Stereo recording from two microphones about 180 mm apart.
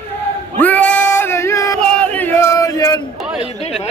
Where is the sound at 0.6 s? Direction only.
10° left (ahead or behind).